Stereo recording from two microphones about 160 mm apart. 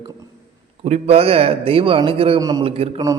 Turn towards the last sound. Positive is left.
turn(degrees=-35)  # may be behind; listen again after turning